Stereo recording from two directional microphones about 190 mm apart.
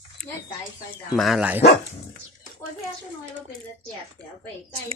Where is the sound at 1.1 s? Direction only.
Centre (ahead or behind).